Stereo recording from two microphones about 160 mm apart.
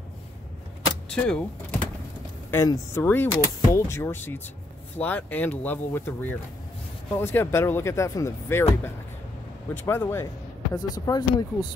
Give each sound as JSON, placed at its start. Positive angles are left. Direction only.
{"t": 1.0, "sound": "speech", "side_deg": 5}
{"t": 2.5, "sound": "speech", "side_deg": 15}
{"t": 9.8, "sound": "speech", "side_deg": 15}
{"t": 10.7, "sound": "speech", "side_deg": 25}